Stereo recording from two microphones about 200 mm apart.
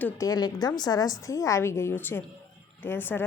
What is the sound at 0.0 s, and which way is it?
A woman's voice, 15° left (ahead or behind).